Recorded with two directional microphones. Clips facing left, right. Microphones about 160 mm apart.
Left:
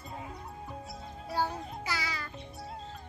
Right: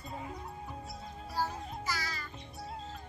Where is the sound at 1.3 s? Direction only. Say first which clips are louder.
Left 3 dB; 65° left (ahead or behind).